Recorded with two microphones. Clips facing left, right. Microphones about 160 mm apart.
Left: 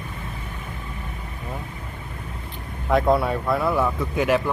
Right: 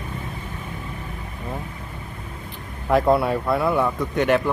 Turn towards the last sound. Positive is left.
turn(degrees=0)  # may be behind; listen again after turning